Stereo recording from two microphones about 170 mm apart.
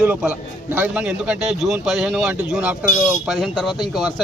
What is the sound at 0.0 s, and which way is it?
A man's voice, 10° right (ahead or behind).